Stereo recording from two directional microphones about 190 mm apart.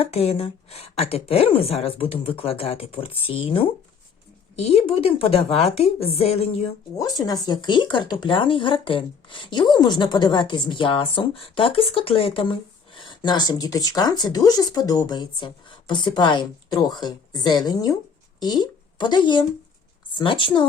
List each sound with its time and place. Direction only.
0.0 s a woman's voice: 30° left (ahead or behind)
7.0 s a woman's voice: 20° left (ahead or behind)